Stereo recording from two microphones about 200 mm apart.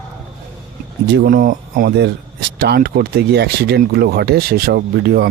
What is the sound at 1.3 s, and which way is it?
Speech, 45° right (ahead or behind).